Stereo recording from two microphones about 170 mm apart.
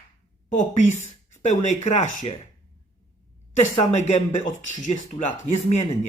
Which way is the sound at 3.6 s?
40° left (ahead or behind).